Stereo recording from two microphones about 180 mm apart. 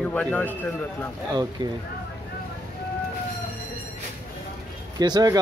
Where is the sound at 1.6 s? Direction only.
25° right (ahead or behind).